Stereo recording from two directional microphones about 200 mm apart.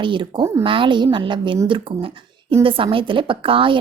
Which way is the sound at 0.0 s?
25° right (ahead or behind).